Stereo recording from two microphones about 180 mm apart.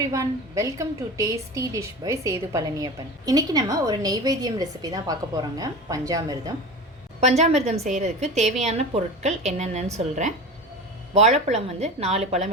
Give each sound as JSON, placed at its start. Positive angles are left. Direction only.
{"t": 0.0, "sound": "a woman's voice", "side_deg": -20}
{"t": 7.2, "sound": "a woman's voice", "side_deg": -35}